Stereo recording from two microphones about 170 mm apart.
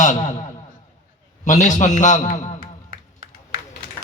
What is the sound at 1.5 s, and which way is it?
Speech, 45° left (ahead or behind).